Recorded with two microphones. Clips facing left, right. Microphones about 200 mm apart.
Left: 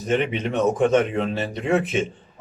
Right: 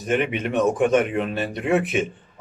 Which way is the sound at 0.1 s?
10° right (ahead or behind).